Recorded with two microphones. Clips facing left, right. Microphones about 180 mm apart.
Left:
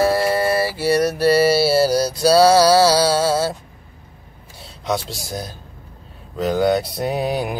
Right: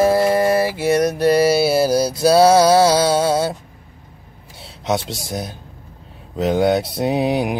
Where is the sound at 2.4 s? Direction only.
20° right (ahead or behind).